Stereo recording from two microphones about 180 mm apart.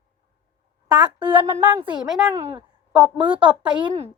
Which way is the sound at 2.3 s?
15° right (ahead or behind).